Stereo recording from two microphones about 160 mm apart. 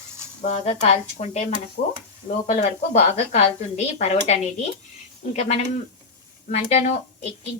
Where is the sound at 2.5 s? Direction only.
45° left (ahead or behind).